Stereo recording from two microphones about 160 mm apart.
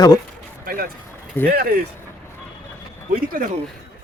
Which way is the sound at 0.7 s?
65° right (ahead or behind).